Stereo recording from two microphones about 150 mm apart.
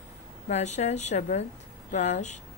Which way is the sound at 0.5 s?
50° left (ahead or behind).